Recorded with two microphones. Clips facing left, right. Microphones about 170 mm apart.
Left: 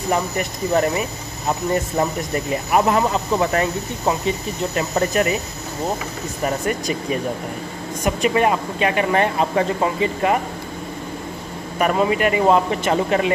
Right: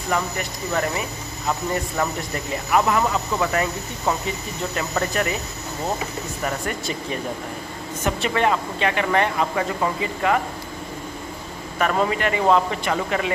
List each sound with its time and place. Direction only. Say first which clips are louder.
0.1 s speech: left 3 dB; 25° left (ahead or behind)
2.7 s speech: left 2 dB; 25° left (ahead or behind)
8.0 s speech: left 4 dB; 15° left (ahead or behind)
11.8 s speech: left 3 dB; 15° left (ahead or behind)